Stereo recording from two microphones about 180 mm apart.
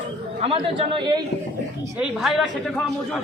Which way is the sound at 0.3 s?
35° right (ahead or behind).